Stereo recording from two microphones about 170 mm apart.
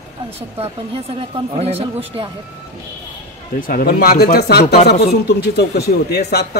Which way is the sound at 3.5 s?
55° left (ahead or behind).